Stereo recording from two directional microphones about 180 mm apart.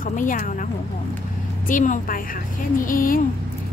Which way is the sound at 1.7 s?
45° left (ahead or behind).